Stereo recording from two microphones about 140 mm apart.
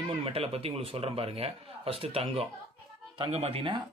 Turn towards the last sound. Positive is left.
turn(degrees=-40)  # may be behind; listen again after turning